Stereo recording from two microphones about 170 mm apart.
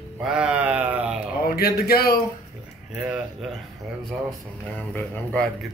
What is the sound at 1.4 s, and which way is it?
Speech, 65° left (ahead or behind).